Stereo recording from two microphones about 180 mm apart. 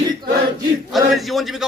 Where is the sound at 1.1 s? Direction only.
Centre (ahead or behind).